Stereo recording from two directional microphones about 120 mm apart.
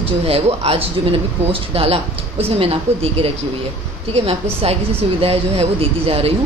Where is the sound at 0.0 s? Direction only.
55° right (ahead or behind).